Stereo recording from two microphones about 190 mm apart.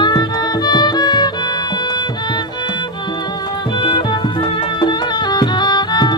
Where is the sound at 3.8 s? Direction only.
25° left (ahead or behind).